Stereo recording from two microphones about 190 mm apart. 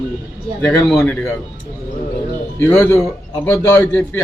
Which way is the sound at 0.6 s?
15° left (ahead or behind).